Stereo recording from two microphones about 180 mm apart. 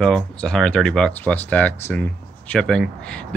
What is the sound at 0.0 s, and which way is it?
Speech, 5° left (ahead or behind).